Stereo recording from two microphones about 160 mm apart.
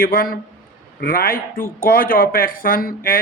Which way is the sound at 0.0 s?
60° left (ahead or behind).